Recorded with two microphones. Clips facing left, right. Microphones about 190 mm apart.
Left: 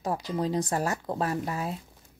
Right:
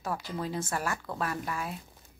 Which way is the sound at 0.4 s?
35° left (ahead or behind).